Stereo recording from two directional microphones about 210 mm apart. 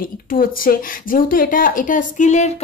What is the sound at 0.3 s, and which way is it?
A woman's voice, 40° left (ahead or behind).